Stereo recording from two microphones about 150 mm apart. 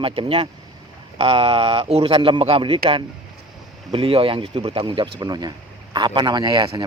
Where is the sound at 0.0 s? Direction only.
40° right (ahead or behind).